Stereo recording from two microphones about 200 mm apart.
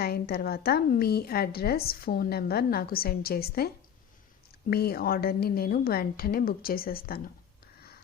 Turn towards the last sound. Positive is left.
turn(degrees=50)  # may be behind; listen again after turning